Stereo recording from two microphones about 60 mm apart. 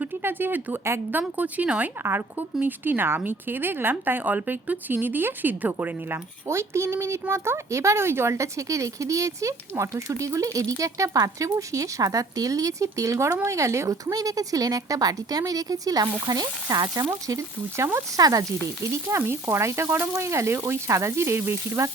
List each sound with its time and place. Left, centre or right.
0.2 s a woman's voice: right
1.4 s a woman's voice: right
6.5 s speech: right
16.3 s frying: right
17.2 s speech: right
19.0 s frying: right
20.1 s speech: right
20.7 s frying: right